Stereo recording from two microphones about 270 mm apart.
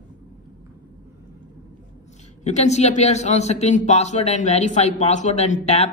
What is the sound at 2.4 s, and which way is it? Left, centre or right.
A man's voice, left.